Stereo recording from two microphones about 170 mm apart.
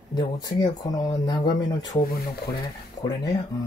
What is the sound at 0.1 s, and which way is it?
Speech, 25° left (ahead or behind).